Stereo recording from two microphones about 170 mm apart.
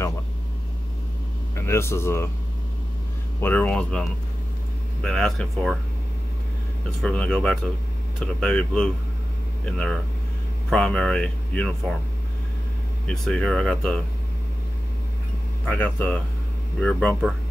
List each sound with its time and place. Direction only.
1.5 s speech: 15° left (ahead or behind)
3.3 s speech: 10° left (ahead or behind)
5.0 s speech: 5° left (ahead or behind)
7.0 s speech: 5° left (ahead or behind)
13.0 s speech: 5° left (ahead or behind)
15.6 s speech: 10° left (ahead or behind)